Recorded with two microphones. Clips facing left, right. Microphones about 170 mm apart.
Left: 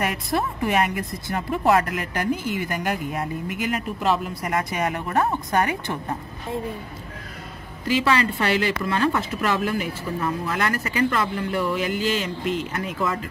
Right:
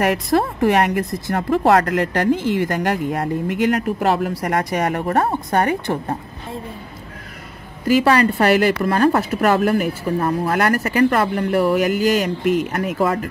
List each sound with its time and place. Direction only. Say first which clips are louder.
0.0 s speech: right 7 dB; 75° right (ahead or behind)
4.6 s speech: right 6 dB; 50° right (ahead or behind)
5.1 s speech: right 2 dB; 35° right (ahead or behind)
8.0 s speech: right 6 dB; 55° right (ahead or behind)